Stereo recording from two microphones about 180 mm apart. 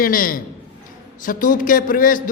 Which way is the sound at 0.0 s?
50° left (ahead or behind).